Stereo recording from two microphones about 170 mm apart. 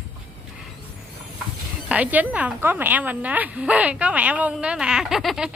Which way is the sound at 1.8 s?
10° right (ahead or behind).